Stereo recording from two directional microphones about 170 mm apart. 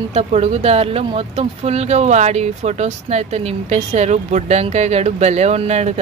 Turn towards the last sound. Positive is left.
turn(degrees=-40)  # may be behind; listen again after turning